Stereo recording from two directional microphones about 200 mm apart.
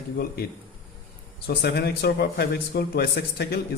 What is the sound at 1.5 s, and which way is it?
A man's voice, 55° left (ahead or behind).